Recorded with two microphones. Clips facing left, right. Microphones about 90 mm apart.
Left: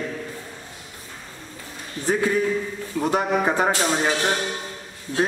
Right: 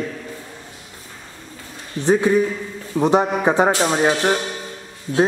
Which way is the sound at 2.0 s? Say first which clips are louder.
Right 5 dB; 20° right (ahead or behind).